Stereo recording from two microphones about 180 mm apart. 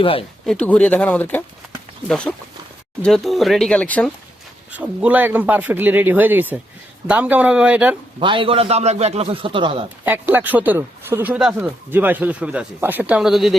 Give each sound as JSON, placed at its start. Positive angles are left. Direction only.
{"t": 0.0, "sound": "speech", "side_deg": 30}
{"t": 0.4, "sound": "speech", "side_deg": 5}
{"t": 4.7, "sound": "speech", "side_deg": -10}
{"t": 8.2, "sound": "a man's voice", "side_deg": -30}
{"t": 10.0, "sound": "speech", "side_deg": -10}